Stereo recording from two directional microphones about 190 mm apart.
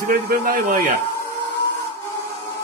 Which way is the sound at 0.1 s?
50° right (ahead or behind).